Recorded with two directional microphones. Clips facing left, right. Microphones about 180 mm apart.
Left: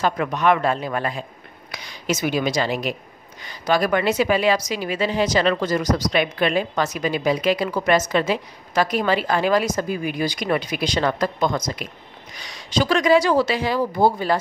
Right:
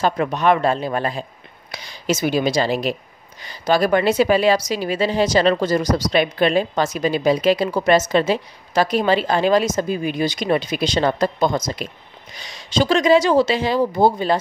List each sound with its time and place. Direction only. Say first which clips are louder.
0.0 s a woman's voice: right 2 dB; 30° right (ahead or behind)